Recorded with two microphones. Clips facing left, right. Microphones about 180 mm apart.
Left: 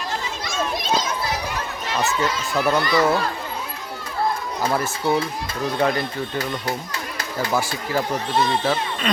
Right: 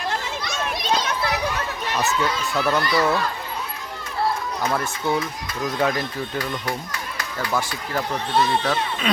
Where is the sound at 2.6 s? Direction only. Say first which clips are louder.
Left 2 dB; 15° left (ahead or behind).